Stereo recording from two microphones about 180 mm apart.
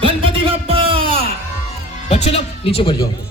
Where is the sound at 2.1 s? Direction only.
35° left (ahead or behind).